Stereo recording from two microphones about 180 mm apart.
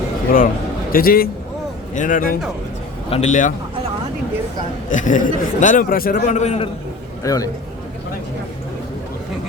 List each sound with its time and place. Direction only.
0.3 s a man's voice: 50° left (ahead or behind)
4.9 s a man's voice: 45° left (ahead or behind)
7.2 s a man's voice: 20° left (ahead or behind)